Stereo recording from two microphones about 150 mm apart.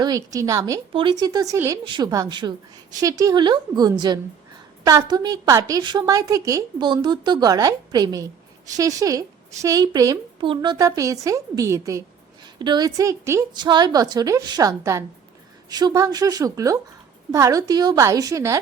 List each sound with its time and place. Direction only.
0.0 s a woman's voice: 25° right (ahead or behind)
1.8 s a woman's voice: 30° right (ahead or behind)